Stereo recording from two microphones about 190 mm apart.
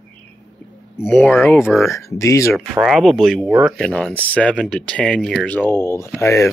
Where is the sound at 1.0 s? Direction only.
10° left (ahead or behind).